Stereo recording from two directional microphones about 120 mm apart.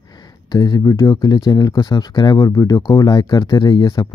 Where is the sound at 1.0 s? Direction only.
45° left (ahead or behind).